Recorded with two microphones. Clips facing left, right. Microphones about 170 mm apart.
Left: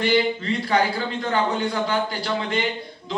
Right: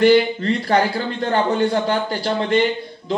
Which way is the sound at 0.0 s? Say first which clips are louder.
Right 7 dB; 55° right (ahead or behind).